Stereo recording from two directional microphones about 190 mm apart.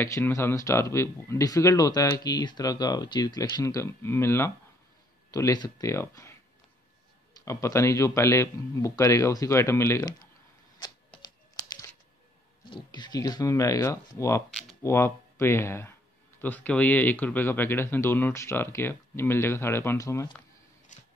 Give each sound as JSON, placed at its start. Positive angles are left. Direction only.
{"t": 0.0, "sound": "speech", "side_deg": 15}
{"t": 7.4, "sound": "speech", "side_deg": 15}
{"t": 11.1, "sound": "computer keyboard", "side_deg": 15}
{"t": 12.6, "sound": "speech", "side_deg": 25}
{"t": 14.5, "sound": "speech", "side_deg": 0}
{"t": 14.8, "sound": "speech", "side_deg": 15}
{"t": 20.9, "sound": "scissors", "side_deg": 40}